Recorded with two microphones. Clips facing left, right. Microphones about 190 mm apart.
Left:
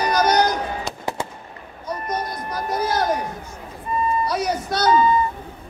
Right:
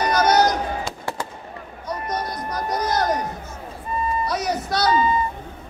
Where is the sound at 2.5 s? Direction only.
5° left (ahead or behind).